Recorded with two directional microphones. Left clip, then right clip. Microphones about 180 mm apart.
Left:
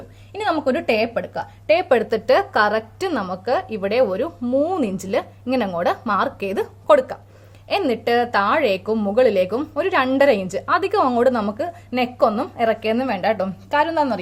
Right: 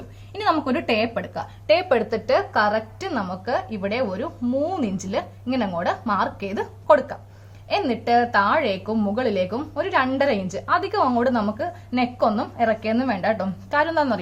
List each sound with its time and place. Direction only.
0.3 s a woman's voice: 25° left (ahead or behind)